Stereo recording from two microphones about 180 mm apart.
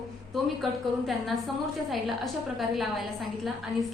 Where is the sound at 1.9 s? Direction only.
Centre (ahead or behind).